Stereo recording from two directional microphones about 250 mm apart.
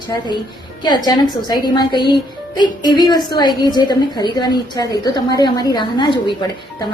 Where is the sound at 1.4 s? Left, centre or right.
Centre.